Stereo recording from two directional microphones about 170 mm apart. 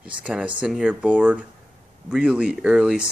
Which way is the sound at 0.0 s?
5° right (ahead or behind).